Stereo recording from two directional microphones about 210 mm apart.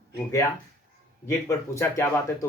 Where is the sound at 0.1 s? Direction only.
15° left (ahead or behind).